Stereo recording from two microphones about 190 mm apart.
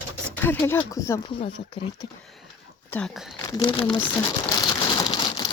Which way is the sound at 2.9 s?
5° left (ahead or behind).